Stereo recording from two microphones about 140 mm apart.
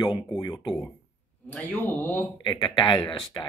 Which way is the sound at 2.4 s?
30° left (ahead or behind).